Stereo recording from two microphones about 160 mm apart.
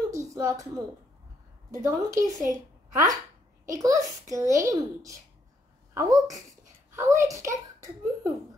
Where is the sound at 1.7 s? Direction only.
20° right (ahead or behind).